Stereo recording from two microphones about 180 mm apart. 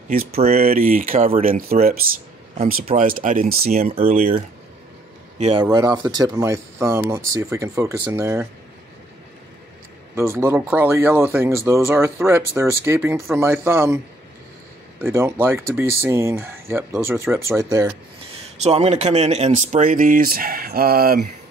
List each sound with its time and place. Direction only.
0.3 s speech: 35° right (ahead or behind)
0.7 s speech: 50° right (ahead or behind)
3.0 s speech: 50° right (ahead or behind)
3.8 s speech: 30° right (ahead or behind)
5.4 s speech: 30° right (ahead or behind)
10.1 s speech: 15° right (ahead or behind)
18.6 s speech: 35° right (ahead or behind); by 21.3 s 55° right (ahead or behind)